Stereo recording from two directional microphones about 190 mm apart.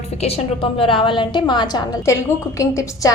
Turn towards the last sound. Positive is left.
turn(degrees=15)  # may be behind; listen again after turning